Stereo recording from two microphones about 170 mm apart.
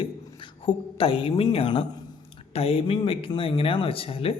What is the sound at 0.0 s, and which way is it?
A woman's voice, 30° left (ahead or behind).